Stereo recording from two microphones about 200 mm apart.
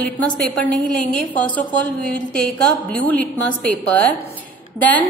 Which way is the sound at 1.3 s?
5° left (ahead or behind).